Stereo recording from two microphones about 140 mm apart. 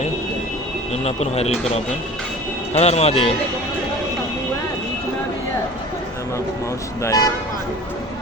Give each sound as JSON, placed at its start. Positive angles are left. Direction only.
{"t": 1.0, "sound": "a man's voice", "side_deg": 50}
{"t": 7.0, "sound": "speech", "side_deg": 25}